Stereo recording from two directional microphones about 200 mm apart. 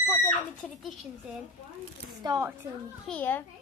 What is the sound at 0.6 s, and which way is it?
Speech, 5° left (ahead or behind).